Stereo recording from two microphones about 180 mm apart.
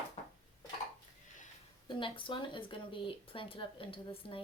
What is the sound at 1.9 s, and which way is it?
Speech, 25° left (ahead or behind).